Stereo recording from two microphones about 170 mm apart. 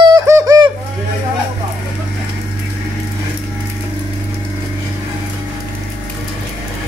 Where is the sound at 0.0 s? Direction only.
20° right (ahead or behind).